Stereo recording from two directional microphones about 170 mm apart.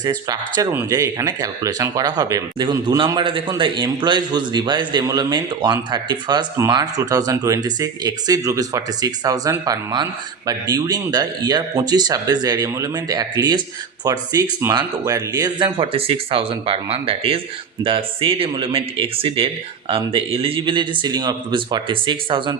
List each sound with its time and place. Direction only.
0.0 s speech: 25° right (ahead or behind)